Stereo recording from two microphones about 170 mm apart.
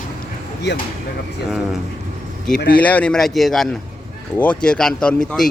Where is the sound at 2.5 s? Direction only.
75° left (ahead or behind).